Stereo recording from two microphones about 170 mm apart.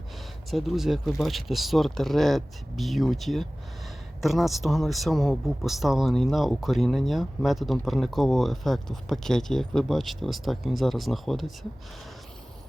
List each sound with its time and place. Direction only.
0.5 s speech: centre (ahead or behind)